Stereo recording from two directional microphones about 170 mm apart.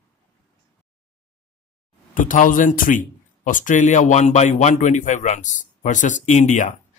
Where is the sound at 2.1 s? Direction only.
50° left (ahead or behind).